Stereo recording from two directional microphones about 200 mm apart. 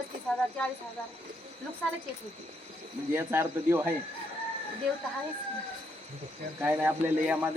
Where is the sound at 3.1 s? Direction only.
10° right (ahead or behind).